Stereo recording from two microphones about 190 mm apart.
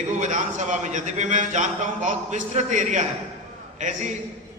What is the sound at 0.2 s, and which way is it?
A man's voice, 40° right (ahead or behind).